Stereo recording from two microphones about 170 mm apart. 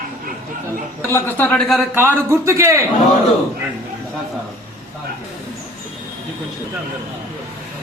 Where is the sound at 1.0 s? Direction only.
15° left (ahead or behind).